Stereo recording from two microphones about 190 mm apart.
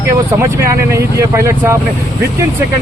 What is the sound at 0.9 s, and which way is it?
Speech, 15° right (ahead or behind).